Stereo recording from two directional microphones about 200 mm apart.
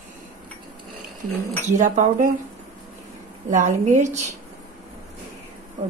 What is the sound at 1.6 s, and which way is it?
Speech, 40° right (ahead or behind).